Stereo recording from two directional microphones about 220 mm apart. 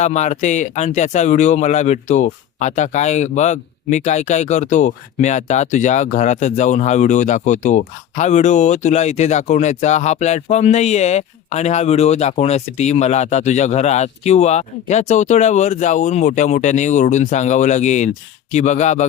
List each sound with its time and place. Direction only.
0.0 s speech: 30° left (ahead or behind)